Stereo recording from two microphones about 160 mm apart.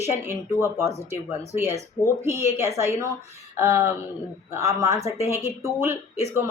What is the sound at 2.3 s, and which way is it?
Speech, 15° right (ahead or behind).